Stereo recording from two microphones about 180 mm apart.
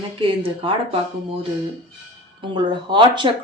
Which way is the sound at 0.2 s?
30° right (ahead or behind).